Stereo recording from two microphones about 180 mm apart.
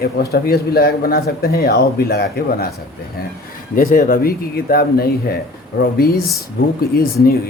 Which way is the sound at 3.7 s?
50° left (ahead or behind).